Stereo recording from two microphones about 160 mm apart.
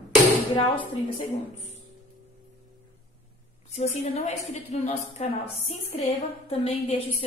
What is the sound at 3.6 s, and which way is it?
A woman's voice, 45° left (ahead or behind).